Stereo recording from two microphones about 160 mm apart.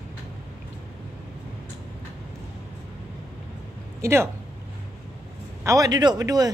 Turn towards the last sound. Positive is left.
turn(degrees=-25)  # may be behind; listen again after turning